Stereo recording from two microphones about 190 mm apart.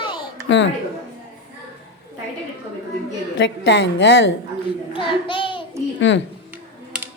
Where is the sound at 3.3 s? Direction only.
70° left (ahead or behind).